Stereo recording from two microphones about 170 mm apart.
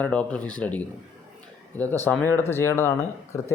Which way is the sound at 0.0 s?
10° left (ahead or behind).